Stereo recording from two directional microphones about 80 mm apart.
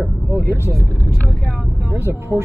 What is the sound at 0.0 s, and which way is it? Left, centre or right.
Vehicle, right.